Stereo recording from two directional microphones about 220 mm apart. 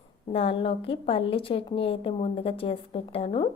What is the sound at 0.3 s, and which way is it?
A woman's voice, 25° left (ahead or behind).